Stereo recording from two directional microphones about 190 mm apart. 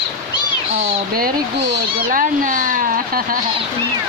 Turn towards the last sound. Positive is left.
turn(degrees=-45)  # may be behind; listen again after turning